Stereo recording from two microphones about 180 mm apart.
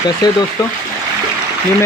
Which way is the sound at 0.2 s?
20° left (ahead or behind).